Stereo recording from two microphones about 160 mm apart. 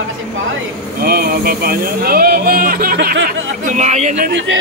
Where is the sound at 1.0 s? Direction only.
70° right (ahead or behind).